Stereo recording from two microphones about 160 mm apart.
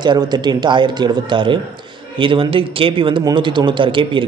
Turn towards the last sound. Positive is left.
turn(degrees=-30)  # may be behind; listen again after turning